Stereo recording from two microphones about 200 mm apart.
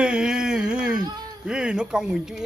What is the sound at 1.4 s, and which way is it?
Speech, 5° right (ahead or behind).